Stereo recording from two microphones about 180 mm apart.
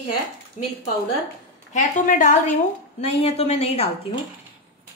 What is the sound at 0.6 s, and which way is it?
Speech, 45° left (ahead or behind).